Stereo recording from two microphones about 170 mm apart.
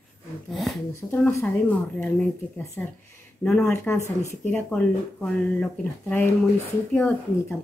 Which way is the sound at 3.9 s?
15° left (ahead or behind).